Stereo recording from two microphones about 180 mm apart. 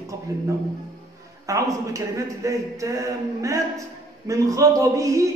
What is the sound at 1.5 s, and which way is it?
A man's voice, 15° right (ahead or behind).